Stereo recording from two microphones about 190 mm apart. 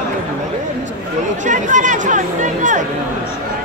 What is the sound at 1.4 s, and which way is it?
Speech, 40° right (ahead or behind).